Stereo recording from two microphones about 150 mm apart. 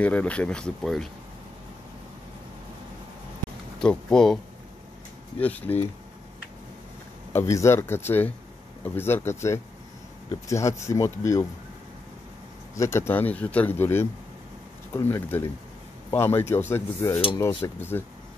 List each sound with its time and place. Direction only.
0.0 s speech: 10° left (ahead or behind)
3.8 s speech: 5° left (ahead or behind)
5.4 s speech: 10° left (ahead or behind)
7.3 s speech: 20° left (ahead or behind)
12.7 s speech: 20° left (ahead or behind)